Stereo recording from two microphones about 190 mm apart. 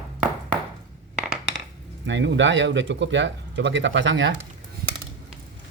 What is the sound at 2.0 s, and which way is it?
Speech, 70° right (ahead or behind).